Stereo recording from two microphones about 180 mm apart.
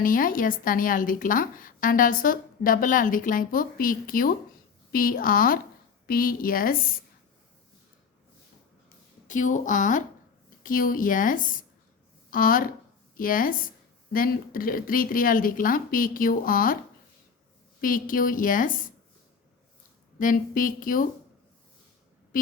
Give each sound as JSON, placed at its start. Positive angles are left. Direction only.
{"t": 0.0, "sound": "a woman's voice", "side_deg": 50}
{"t": 9.2, "sound": "a woman's voice", "side_deg": 45}
{"t": 17.7, "sound": "a woman's voice", "side_deg": 50}
{"t": 20.1, "sound": "a woman's voice", "side_deg": 50}